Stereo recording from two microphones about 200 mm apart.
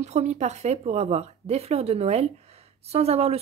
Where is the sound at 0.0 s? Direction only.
35° right (ahead or behind).